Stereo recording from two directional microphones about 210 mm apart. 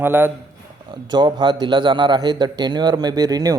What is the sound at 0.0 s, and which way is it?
Speech, 10° right (ahead or behind).